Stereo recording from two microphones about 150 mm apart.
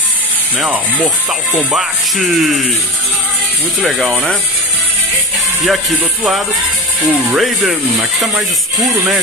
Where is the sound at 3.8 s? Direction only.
Centre (ahead or behind).